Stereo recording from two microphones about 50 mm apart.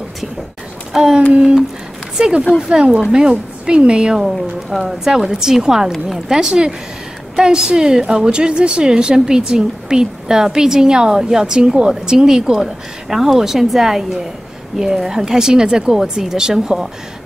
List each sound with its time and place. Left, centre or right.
0.9 s a woman's voice: centre
4.6 s a woman's voice: centre